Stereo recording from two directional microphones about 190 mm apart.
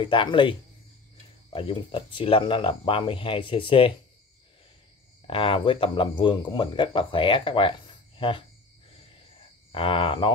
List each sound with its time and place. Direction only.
0.0 s speech: 25° left (ahead or behind)
5.2 s speech: 30° left (ahead or behind)
8.2 s cricket: 25° left (ahead or behind)
9.7 s speech: 30° left (ahead or behind)